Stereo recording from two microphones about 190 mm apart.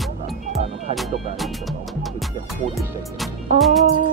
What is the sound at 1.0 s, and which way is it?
Speech, centre (ahead or behind).